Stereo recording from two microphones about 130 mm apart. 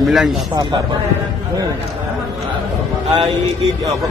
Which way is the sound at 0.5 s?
35° right (ahead or behind).